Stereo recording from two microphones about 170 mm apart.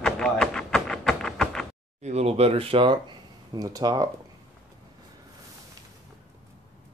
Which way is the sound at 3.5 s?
20° right (ahead or behind).